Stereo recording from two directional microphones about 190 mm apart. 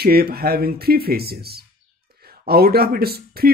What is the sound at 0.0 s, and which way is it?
Speech, 55° right (ahead or behind).